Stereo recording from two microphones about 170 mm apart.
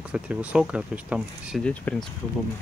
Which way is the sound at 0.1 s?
10° right (ahead or behind).